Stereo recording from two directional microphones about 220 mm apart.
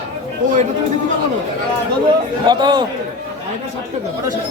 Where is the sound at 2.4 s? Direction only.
20° right (ahead or behind).